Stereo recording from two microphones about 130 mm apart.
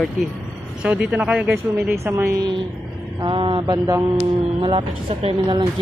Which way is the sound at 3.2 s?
40° right (ahead or behind).